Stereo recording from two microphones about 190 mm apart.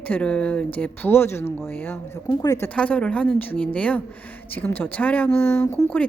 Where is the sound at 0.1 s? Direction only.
5° left (ahead or behind).